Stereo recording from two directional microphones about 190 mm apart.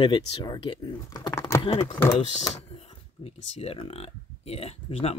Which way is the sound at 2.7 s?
30° left (ahead or behind).